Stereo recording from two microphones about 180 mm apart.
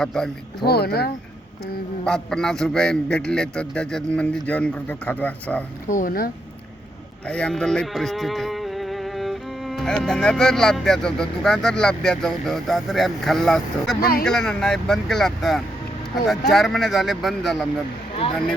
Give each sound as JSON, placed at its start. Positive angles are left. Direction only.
{"t": 0.0, "sound": "a man's voice", "side_deg": 5}
{"t": 0.6, "sound": "speech", "side_deg": 60}
{"t": 2.0, "sound": "a man's voice", "side_deg": 5}
{"t": 5.9, "sound": "speech", "side_deg": 50}
{"t": 7.3, "sound": "a man's voice", "side_deg": 5}